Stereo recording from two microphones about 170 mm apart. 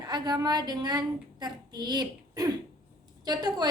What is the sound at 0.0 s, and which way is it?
A woman's voice, 25° right (ahead or behind).